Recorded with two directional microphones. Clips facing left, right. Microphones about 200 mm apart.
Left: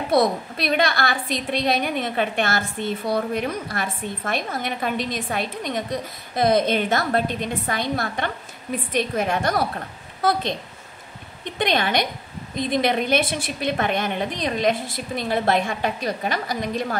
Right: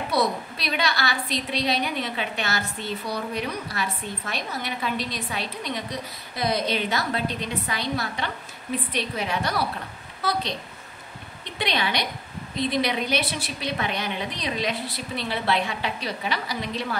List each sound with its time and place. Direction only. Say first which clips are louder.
0.1 s a woman's voice: left 6 dB; 50° left (ahead or behind)
11.4 s a woman's voice: left 5 dB; 50° left (ahead or behind)